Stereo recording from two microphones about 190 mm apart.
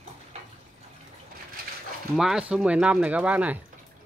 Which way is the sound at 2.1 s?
5° right (ahead or behind).